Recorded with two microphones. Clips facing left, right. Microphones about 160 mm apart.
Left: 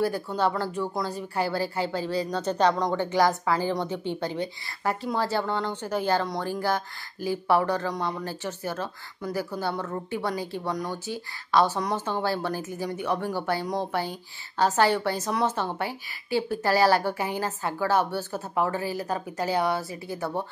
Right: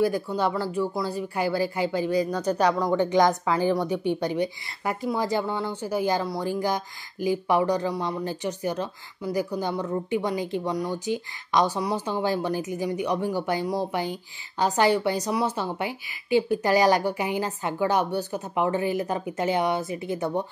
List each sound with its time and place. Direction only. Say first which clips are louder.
0.0 s speech: right 2 dB; 10° right (ahead or behind)